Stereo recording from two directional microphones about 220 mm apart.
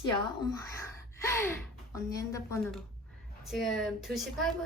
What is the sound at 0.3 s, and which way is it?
Speech, 15° left (ahead or behind).